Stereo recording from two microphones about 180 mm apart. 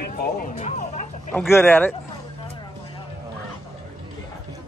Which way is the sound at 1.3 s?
10° left (ahead or behind).